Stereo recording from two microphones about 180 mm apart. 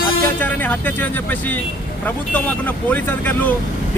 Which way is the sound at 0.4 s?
10° left (ahead or behind).